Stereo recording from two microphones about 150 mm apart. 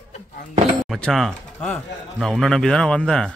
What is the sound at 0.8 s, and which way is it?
Speech, centre (ahead or behind).